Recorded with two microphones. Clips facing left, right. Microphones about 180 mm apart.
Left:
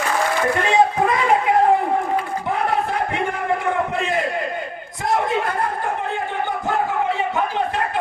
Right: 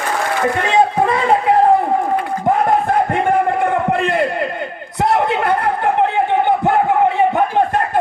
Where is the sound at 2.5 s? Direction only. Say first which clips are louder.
Right 8 dB; 50° right (ahead or behind).